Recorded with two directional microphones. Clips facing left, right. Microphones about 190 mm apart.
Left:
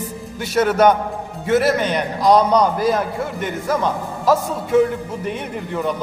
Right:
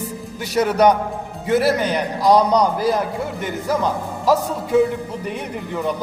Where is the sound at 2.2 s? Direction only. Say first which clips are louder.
Left 1 dB; 10° right (ahead or behind).